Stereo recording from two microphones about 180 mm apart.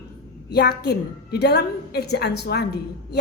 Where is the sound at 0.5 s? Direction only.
65° left (ahead or behind).